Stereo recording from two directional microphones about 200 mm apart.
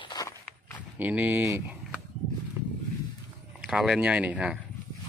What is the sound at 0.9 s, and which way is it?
Speech, 10° right (ahead or behind).